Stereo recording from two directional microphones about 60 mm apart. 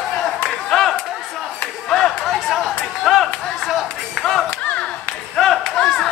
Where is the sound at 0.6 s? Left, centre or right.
Centre.